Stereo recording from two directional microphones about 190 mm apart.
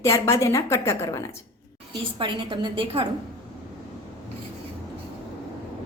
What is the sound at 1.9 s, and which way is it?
A woman's voice, 25° right (ahead or behind).